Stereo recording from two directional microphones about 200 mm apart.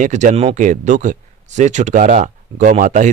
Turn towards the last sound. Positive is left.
turn(degrees=-40)  # may be behind; listen again after turning